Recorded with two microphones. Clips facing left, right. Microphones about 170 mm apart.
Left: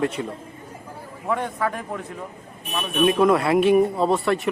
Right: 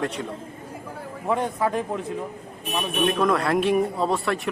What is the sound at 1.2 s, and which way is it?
Speech, 25° right (ahead or behind).